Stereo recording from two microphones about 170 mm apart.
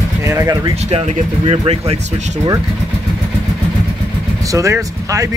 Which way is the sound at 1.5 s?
35° right (ahead or behind).